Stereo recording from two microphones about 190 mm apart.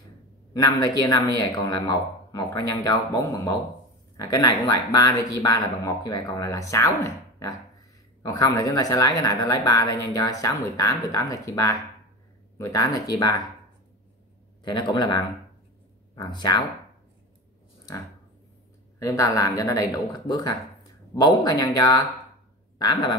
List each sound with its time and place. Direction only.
0.5 s speech: 20° left (ahead or behind)
14.6 s speech: 25° left (ahead or behind)
18.9 s speech: 15° left (ahead or behind)